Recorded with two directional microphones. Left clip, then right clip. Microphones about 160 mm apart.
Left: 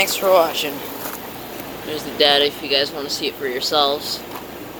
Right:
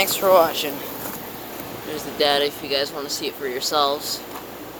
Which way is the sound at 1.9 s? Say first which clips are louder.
Left 4 dB; centre (ahead or behind).